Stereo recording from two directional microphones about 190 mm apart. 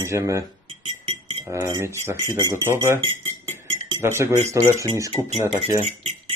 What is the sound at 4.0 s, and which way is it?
Speech, 15° right (ahead or behind).